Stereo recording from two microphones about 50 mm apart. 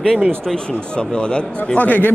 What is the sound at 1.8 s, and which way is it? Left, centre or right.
Speech, left.